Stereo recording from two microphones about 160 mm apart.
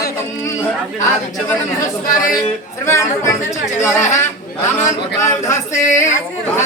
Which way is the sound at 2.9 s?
15° left (ahead or behind).